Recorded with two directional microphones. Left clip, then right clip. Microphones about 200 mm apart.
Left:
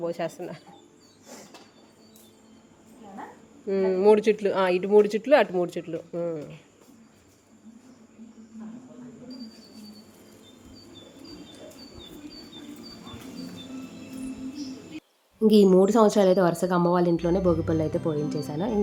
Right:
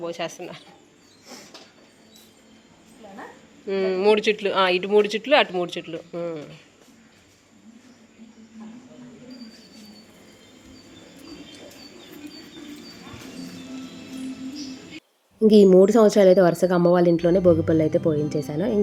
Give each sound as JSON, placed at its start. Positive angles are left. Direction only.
{"t": 0.0, "sound": "speech", "side_deg": 20}
{"t": 3.7, "sound": "speech", "side_deg": 10}
{"t": 15.4, "sound": "a woman's voice", "side_deg": -5}